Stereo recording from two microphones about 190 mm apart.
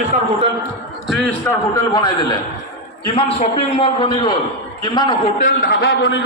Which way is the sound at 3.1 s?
30° left (ahead or behind).